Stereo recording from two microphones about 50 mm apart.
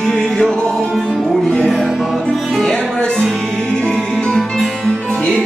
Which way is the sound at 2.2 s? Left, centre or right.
Centre.